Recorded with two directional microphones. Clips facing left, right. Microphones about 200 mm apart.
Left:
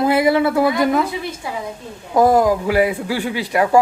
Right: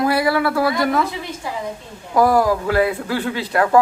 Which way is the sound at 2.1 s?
20° left (ahead or behind).